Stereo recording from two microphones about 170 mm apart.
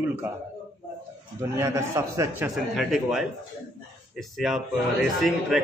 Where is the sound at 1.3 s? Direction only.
15° right (ahead or behind).